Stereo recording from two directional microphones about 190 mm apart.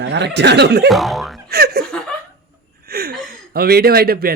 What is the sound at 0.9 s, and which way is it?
Speech, centre (ahead or behind).